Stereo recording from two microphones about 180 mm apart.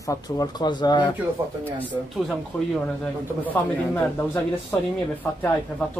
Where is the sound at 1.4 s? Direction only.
15° right (ahead or behind).